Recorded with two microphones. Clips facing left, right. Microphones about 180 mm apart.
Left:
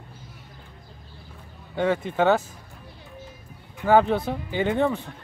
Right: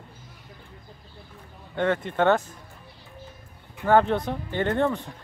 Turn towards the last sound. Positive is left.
turn(degrees=5)  # may be behind; listen again after turning